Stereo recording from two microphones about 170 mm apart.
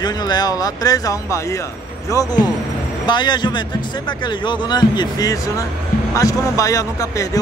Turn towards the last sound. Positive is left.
turn(degrees=20)  # may be behind; listen again after turning